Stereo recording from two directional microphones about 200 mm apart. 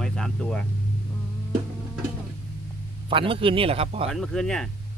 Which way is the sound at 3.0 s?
25° right (ahead or behind).